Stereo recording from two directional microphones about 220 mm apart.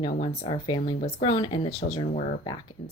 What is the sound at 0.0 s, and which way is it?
A woman's voice, 25° left (ahead or behind).